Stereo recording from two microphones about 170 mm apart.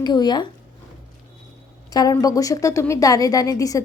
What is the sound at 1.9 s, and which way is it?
A woman's voice, 20° left (ahead or behind).